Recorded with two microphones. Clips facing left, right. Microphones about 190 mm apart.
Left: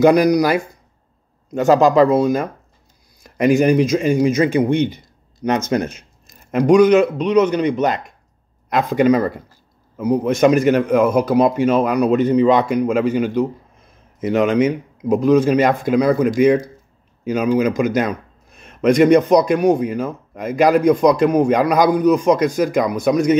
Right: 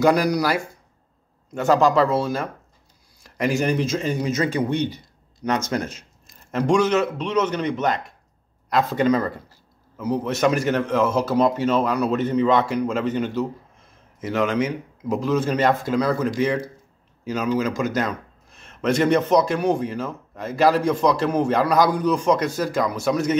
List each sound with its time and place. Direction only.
0.0 s a man's voice: 20° left (ahead or behind)